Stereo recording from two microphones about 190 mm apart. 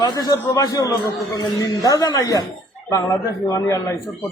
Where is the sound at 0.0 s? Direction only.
20° left (ahead or behind).